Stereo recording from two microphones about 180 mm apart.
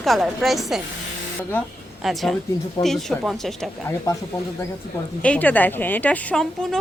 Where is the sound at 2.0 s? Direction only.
Centre (ahead or behind).